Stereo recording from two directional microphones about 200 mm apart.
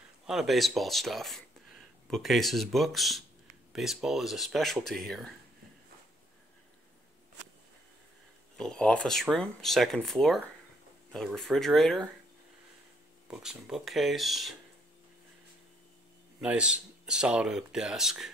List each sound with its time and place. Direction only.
0.3 s speech: centre (ahead or behind)
8.5 s speech: 5° left (ahead or behind)
13.3 s speech: 5° right (ahead or behind)
16.3 s speech: 5° right (ahead or behind)